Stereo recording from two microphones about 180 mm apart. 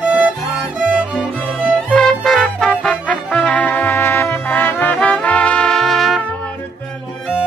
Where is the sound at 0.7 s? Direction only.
5° right (ahead or behind).